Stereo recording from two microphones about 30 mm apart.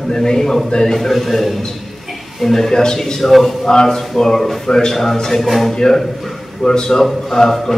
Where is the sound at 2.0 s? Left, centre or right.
Centre.